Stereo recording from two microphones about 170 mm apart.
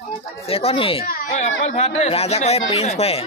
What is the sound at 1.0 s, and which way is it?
Speech, 55° left (ahead or behind).